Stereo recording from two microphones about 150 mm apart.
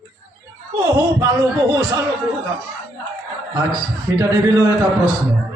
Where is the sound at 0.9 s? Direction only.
20° right (ahead or behind).